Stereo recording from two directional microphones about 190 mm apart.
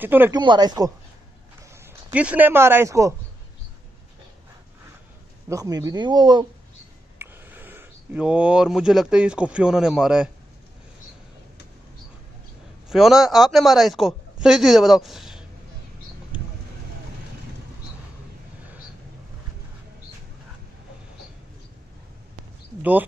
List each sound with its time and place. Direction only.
0.0 s speech: 10° right (ahead or behind)
0.3 s speech: 20° right (ahead or behind)
1.8 s speech: 10° right (ahead or behind)
5.5 s speech: 20° right (ahead or behind)
7.2 s speech: 10° right (ahead or behind)
12.9 s speech: centre (ahead or behind)
22.8 s speech: 10° right (ahead or behind)